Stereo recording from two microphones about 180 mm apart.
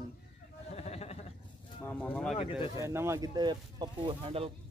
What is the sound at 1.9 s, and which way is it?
Speech, 10° left (ahead or behind).